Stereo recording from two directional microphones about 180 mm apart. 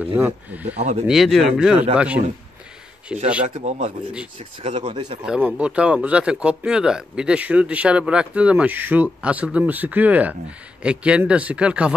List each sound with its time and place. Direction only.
0.0 s speech: 10° right (ahead or behind)
0.7 s speech: 40° right (ahead or behind)
1.0 s speech: centre (ahead or behind)
3.6 s speech: 40° right (ahead or behind)
5.2 s speech: 5° right (ahead or behind)